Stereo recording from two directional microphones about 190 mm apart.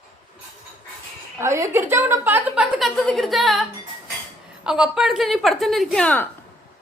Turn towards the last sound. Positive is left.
turn(degrees=5)  # may be behind; listen again after turning